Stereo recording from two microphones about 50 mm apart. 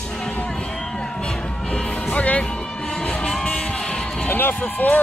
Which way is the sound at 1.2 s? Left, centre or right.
Centre.